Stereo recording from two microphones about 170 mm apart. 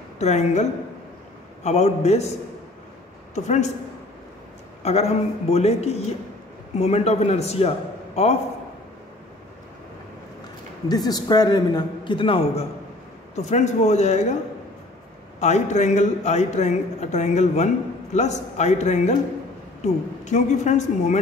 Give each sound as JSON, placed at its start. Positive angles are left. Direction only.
{"t": 0.2, "sound": "speech", "side_deg": 40}
{"t": 3.3, "sound": "speech", "side_deg": 45}
{"t": 4.8, "sound": "speech", "side_deg": 40}
{"t": 11.1, "sound": "a man's voice", "side_deg": 20}
{"t": 15.4, "sound": "speech", "side_deg": 45}